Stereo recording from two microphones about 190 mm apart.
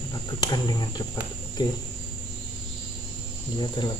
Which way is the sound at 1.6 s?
20° left (ahead or behind).